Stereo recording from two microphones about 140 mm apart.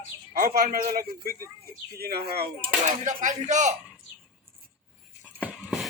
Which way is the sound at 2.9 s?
60° right (ahead or behind).